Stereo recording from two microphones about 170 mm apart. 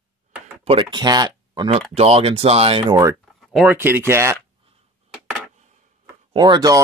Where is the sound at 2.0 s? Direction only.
35° right (ahead or behind).